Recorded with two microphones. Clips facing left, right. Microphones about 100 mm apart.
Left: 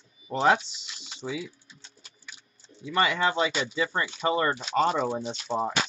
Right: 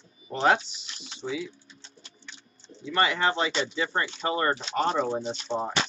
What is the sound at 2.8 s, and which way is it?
Speech, 30° right (ahead or behind).